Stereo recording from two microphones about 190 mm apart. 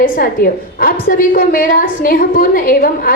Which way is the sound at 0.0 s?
50° left (ahead or behind).